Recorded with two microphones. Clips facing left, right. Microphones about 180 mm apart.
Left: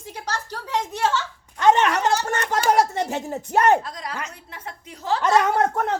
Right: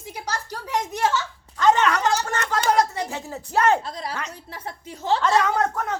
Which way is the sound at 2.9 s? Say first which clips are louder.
Left 4 dB; 25° left (ahead or behind).